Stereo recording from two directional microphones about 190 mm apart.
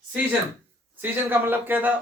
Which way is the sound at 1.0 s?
10° right (ahead or behind).